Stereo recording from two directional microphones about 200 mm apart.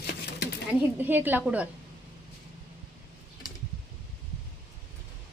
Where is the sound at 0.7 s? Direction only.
10° right (ahead or behind).